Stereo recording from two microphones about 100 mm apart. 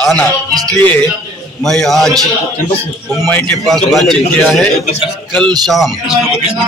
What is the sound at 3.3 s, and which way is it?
Speech, 15° left (ahead or behind).